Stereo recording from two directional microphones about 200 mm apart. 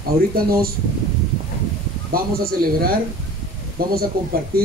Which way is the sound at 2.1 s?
50° right (ahead or behind).